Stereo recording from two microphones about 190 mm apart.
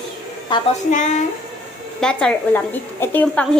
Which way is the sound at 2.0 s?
5° left (ahead or behind).